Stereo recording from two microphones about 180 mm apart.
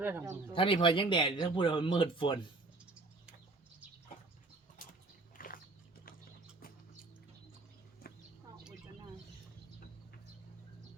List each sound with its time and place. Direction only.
0.0 s speech: 15° right (ahead or behind)
0.5 s speech: 30° left (ahead or behind)
5.4 s biting: 50° left (ahead or behind)